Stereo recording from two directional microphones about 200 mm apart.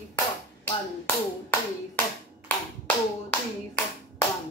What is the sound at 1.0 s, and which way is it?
A woman's voice, 10° left (ahead or behind).